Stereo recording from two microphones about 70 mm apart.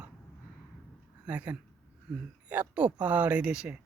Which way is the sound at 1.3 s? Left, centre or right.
Centre.